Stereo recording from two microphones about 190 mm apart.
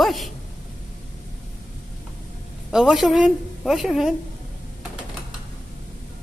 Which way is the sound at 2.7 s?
Centre (ahead or behind).